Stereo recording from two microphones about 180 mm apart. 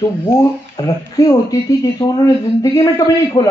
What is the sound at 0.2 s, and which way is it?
Speech, 15° left (ahead or behind).